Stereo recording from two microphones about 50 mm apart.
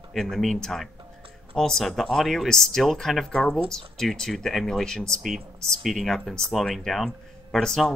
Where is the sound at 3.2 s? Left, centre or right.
Centre.